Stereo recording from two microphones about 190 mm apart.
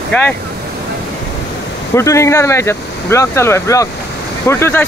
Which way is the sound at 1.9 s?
15° left (ahead or behind).